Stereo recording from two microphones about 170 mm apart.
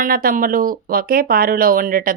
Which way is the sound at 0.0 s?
60° right (ahead or behind).